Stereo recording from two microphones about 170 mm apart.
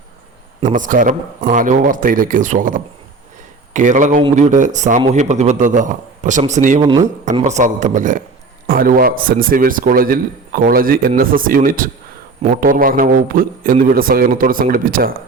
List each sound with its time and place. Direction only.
0.6 s a man's voice: 50° right (ahead or behind)
6.8 s speech: 25° right (ahead or behind)
7.4 s a man's voice: 45° right (ahead or behind)